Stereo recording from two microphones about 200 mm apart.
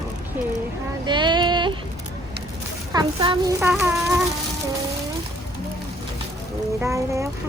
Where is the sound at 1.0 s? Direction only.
20° right (ahead or behind).